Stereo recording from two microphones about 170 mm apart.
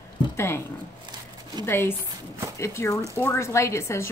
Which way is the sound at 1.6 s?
15° left (ahead or behind).